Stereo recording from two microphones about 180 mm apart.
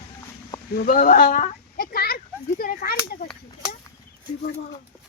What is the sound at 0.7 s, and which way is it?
Speech, 55° left (ahead or behind).